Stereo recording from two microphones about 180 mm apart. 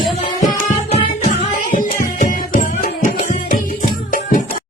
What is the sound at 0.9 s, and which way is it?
Music, 35° left (ahead or behind).